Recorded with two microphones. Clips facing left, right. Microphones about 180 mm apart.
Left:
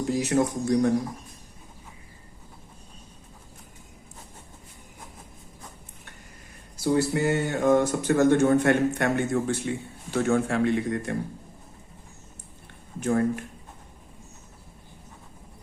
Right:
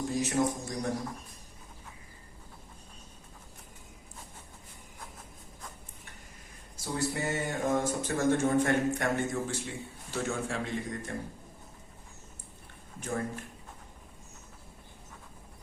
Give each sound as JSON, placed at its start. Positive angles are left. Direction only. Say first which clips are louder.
{"t": 0.0, "sound": "speech", "louder": "left 5 dB", "side_deg": 70}
{"t": 6.8, "sound": "a man's voice", "louder": "left 9 dB", "side_deg": 75}
{"t": 13.1, "sound": "speech", "louder": "left 10 dB", "side_deg": 70}